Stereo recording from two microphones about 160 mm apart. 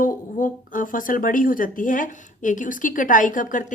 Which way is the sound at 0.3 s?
55° left (ahead or behind).